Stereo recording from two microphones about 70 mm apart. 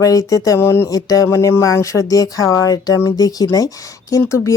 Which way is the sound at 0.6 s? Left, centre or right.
Left.